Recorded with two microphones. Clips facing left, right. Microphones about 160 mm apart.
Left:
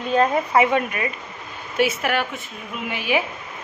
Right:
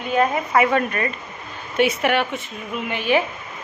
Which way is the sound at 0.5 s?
20° left (ahead or behind).